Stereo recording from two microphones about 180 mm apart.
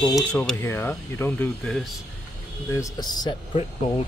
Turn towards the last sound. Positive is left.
turn(degrees=30)  # may be behind; listen again after turning